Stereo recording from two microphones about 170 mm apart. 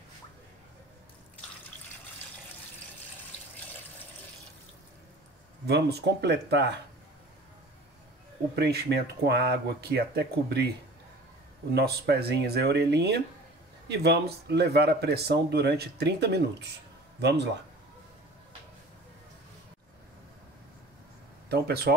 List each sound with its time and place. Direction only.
5.7 s speech: 75° right (ahead or behind)
8.5 s speech: 70° right (ahead or behind)
11.7 s speech: 70° right (ahead or behind)
17.2 s speech: 85° right
21.5 s speech: 70° right (ahead or behind)